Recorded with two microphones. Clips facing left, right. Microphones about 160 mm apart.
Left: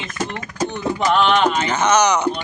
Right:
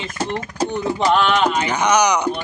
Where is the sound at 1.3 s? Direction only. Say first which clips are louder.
Left 1 dB; 10° right (ahead or behind).